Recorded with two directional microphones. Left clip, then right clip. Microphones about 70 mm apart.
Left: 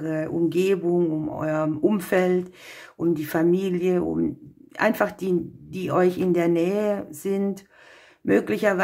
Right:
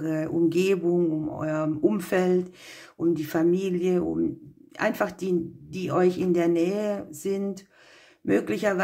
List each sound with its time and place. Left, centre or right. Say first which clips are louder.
0.0 s speech: even; centre
1.0 s speech: left 2 dB; centre